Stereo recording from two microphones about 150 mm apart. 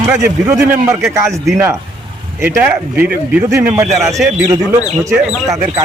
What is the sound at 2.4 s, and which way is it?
A man's voice, 15° right (ahead or behind).